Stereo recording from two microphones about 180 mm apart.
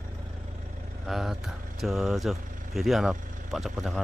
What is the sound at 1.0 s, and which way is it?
Speech, centre (ahead or behind).